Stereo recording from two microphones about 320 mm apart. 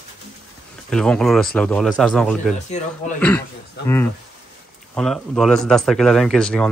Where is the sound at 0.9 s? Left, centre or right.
Centre.